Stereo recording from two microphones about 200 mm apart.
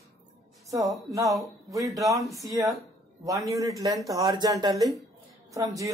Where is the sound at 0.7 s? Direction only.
15° right (ahead or behind).